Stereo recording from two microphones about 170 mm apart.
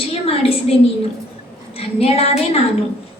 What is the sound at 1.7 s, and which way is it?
Speech, 35° left (ahead or behind).